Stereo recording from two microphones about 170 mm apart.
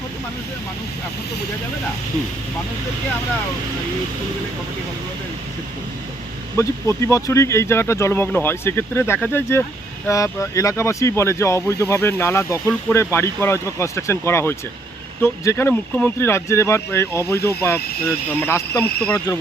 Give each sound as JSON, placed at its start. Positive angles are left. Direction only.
{"t": 6.6, "sound": "speech", "side_deg": 15}